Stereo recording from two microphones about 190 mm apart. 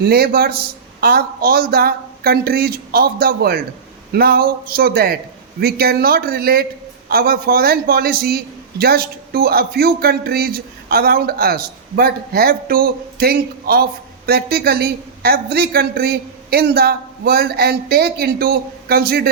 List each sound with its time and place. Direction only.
0.0 s a woman's voice: 55° right (ahead or behind)